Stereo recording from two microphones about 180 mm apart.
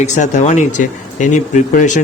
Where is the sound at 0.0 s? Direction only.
40° left (ahead or behind).